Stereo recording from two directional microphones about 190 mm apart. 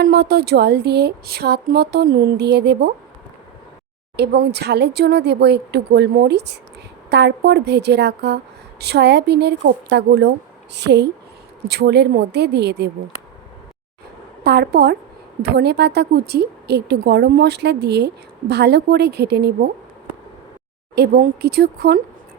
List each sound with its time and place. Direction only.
0.0 s a woman's voice: 55° right (ahead or behind)
4.2 s a woman's voice: 60° right (ahead or behind)
14.4 s a woman's voice: 60° right (ahead or behind)
20.9 s a woman's voice: 55° right (ahead or behind)